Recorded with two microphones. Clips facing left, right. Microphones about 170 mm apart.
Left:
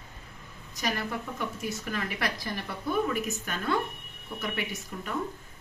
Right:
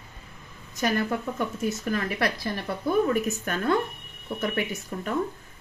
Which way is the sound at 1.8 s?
40° right (ahead or behind).